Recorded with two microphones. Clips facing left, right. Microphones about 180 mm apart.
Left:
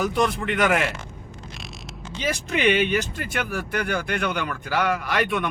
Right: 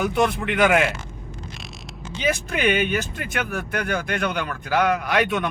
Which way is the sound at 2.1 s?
55° right (ahead or behind).